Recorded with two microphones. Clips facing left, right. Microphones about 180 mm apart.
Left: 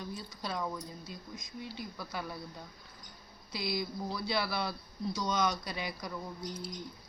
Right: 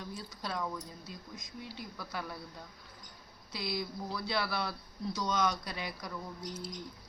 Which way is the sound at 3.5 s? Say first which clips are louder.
Left 2 dB; centre (ahead or behind).